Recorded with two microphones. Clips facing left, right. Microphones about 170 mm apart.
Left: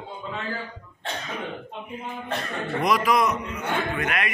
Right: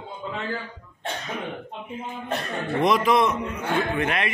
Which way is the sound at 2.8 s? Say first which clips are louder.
Right 2 dB; 25° right (ahead or behind).